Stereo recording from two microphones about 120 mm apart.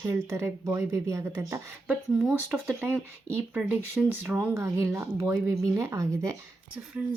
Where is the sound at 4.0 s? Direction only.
5° right (ahead or behind).